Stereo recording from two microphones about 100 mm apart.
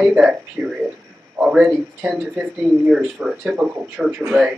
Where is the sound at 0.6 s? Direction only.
20° right (ahead or behind).